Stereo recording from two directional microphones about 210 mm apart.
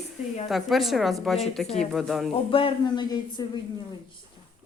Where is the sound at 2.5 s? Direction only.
25° left (ahead or behind).